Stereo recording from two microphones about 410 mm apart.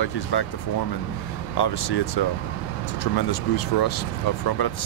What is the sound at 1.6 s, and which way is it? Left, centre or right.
Speech, left.